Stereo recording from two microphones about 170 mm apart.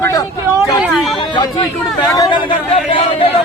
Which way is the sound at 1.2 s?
25° left (ahead or behind).